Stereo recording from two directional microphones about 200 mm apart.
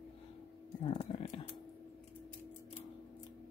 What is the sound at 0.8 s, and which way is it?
Music, 25° left (ahead or behind).